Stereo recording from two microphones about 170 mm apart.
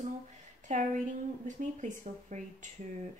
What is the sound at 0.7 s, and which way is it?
Speech, 45° right (ahead or behind).